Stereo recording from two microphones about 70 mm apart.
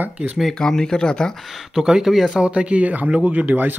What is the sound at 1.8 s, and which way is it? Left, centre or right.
A man's voice, centre.